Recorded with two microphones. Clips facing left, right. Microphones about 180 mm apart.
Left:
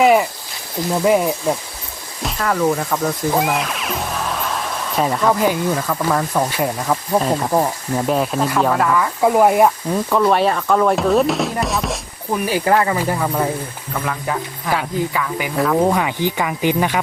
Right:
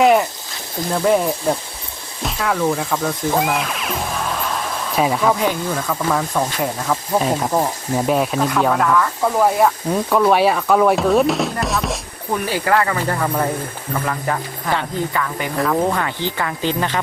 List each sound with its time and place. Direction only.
0.0 s speech: 5° left (ahead or behind)
9.2 s speech: 15° left (ahead or behind)
10.1 s speech: centre (ahead or behind)
12.5 s speech: 20° left (ahead or behind)
13.0 s speech: 5° left (ahead or behind)
15.8 s speech: 15° left (ahead or behind)